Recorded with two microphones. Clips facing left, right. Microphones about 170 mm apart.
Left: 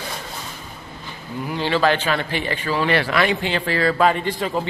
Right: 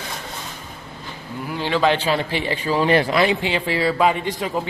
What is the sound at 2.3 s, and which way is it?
Speech, 30° right (ahead or behind).